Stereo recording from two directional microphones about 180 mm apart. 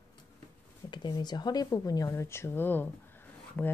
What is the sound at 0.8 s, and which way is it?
Speech, 25° left (ahead or behind).